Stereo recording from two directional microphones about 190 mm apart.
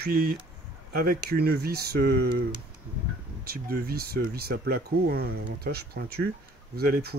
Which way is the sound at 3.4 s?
50° right (ahead or behind).